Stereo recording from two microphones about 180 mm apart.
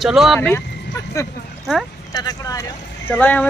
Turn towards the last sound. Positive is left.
turn(degrees=10)  # may be behind; listen again after turning